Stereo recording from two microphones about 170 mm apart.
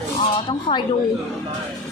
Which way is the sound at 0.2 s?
25° left (ahead or behind).